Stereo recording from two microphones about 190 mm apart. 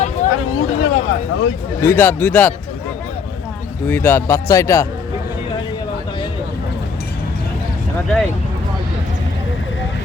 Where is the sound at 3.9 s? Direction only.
15° left (ahead or behind).